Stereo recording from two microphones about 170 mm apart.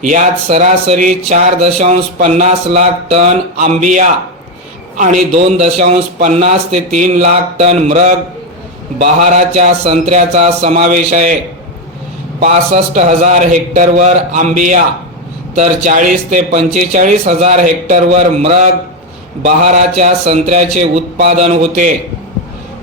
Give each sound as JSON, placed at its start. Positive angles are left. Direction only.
{"t": 0.0, "sound": "speech", "side_deg": -45}
{"t": 12.4, "sound": "speech", "side_deg": -45}